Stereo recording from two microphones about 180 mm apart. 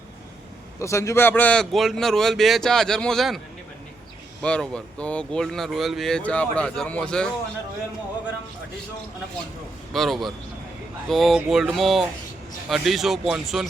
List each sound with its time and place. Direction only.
0.8 s speech: 15° left (ahead or behind); by 3.4 s centre (ahead or behind)
4.4 s speech: 5° left (ahead or behind)
9.9 s speech: centre (ahead or behind)